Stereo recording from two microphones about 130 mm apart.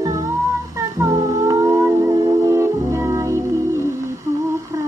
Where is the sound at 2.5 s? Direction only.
20° right (ahead or behind).